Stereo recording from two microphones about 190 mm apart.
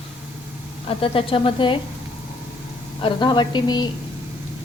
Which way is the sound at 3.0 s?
25° left (ahead or behind).